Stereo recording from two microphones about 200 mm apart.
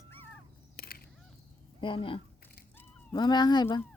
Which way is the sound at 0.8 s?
50° left (ahead or behind).